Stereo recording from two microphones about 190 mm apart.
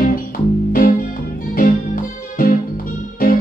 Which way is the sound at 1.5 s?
45° left (ahead or behind).